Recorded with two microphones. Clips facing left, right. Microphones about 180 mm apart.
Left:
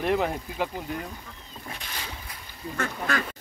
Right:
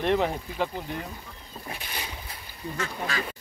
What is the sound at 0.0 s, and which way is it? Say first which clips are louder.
Speech: right 1 dB; 5° left (ahead or behind).